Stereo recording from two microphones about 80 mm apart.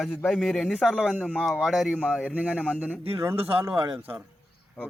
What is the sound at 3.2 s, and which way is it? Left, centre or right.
Speech, right.